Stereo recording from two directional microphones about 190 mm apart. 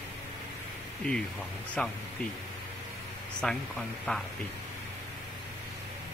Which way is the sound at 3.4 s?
5° left (ahead or behind).